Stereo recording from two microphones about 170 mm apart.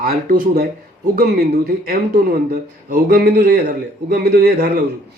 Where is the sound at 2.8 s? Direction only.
65° right (ahead or behind).